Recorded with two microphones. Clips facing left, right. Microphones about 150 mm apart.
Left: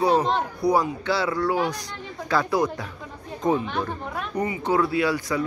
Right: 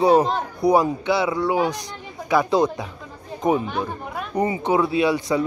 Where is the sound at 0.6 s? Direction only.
20° right (ahead or behind).